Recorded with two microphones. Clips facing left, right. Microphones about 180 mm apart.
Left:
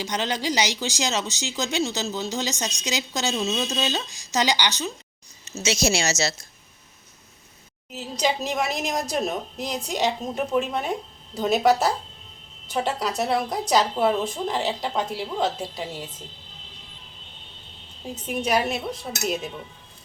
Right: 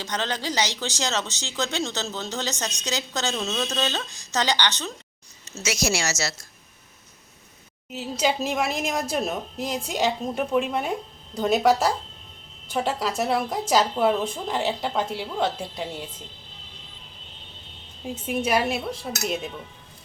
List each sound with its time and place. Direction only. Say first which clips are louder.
0.0 s speech: left 2 dB; 10° left (ahead or behind)
5.5 s speech: left 2 dB; 20° left (ahead or behind)
7.9 s speech: right 1 dB; centre (ahead or behind)
18.1 s speech: even; centre (ahead or behind)